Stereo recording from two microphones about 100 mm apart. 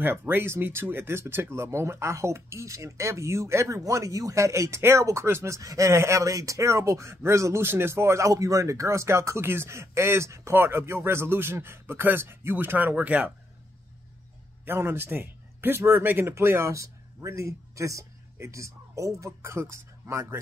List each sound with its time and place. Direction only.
0.0 s speech: 20° right (ahead or behind)
14.6 s a man's voice: 20° right (ahead or behind)